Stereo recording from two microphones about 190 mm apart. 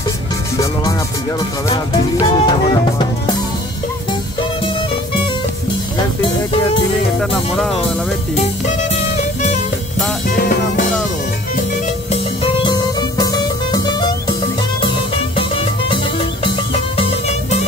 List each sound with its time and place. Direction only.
1.7 s music: 20° left (ahead or behind)
7.2 s speech: centre (ahead or behind)
8.6 s music: 40° left (ahead or behind)
10.3 s music: 50° left (ahead or behind)
12.1 s music: 30° left (ahead or behind)
16.4 s music: 30° left (ahead or behind)